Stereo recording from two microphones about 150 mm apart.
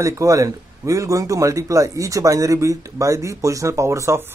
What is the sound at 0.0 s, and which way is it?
A man's voice, 20° right (ahead or behind).